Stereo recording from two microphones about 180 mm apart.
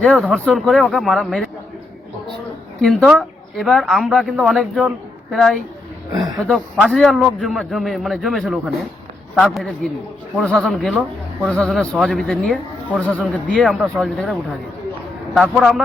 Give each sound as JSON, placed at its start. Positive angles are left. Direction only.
{"t": 0.0, "sound": "a man's voice", "side_deg": 5}
{"t": 2.8, "sound": "a man's voice", "side_deg": 0}